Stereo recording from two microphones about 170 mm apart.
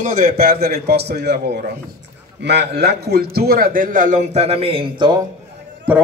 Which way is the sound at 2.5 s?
80° right.